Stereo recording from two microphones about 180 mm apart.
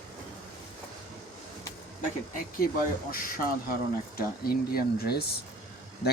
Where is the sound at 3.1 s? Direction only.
55° left (ahead or behind).